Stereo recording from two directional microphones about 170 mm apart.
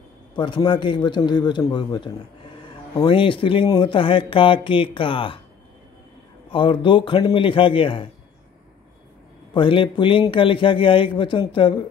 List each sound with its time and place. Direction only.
0.3 s a man's voice: 25° left (ahead or behind)
6.5 s speech: 30° left (ahead or behind)
9.5 s a man's voice: 30° left (ahead or behind)